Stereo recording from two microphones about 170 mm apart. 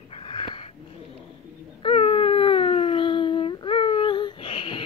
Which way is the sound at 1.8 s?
35° left (ahead or behind).